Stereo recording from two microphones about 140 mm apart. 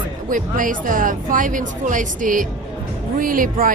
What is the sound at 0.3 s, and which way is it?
A woman's voice, 75° right (ahead or behind).